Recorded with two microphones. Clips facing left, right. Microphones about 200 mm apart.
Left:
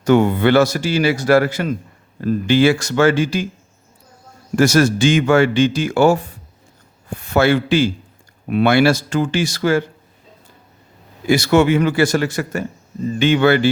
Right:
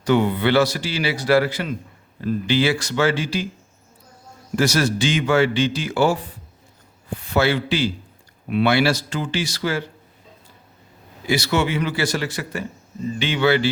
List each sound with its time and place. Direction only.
0.0 s a man's voice: 45° left (ahead or behind)
4.5 s a man's voice: 50° left (ahead or behind)
11.3 s a man's voice: 50° left (ahead or behind)